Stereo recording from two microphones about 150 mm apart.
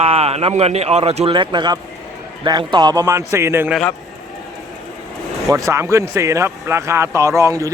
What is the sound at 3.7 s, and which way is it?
Speech, 5° left (ahead or behind).